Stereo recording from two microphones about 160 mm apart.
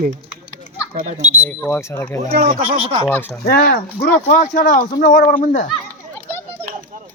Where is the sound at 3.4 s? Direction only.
75° left (ahead or behind).